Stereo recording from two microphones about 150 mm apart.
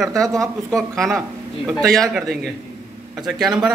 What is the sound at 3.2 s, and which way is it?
Speech, centre (ahead or behind).